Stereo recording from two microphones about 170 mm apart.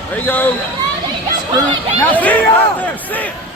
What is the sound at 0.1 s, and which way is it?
Speech, 10° left (ahead or behind).